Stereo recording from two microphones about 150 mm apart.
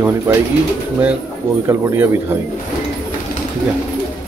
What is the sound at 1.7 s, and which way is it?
Speech, 20° right (ahead or behind).